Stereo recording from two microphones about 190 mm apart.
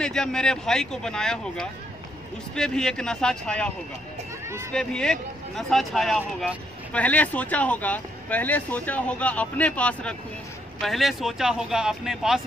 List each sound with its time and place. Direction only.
0.0 s speech: 5° left (ahead or behind)
4.7 s speech: 5° left (ahead or behind)